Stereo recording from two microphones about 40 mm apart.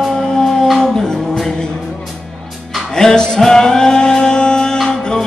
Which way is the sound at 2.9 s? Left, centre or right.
Centre.